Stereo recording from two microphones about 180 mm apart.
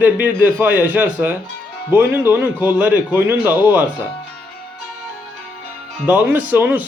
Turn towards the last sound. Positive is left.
turn(degrees=-10)  # may be behind; listen again after turning